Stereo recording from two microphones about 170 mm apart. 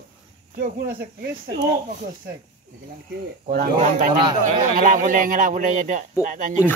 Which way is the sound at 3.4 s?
50° right (ahead or behind).